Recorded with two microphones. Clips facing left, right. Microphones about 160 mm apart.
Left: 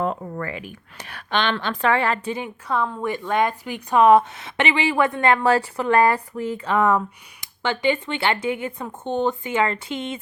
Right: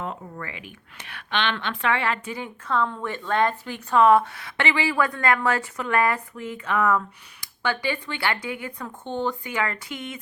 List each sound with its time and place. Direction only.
0.0 s speech: 45° left (ahead or behind)
2.3 s a woman's voice: 15° left (ahead or behind)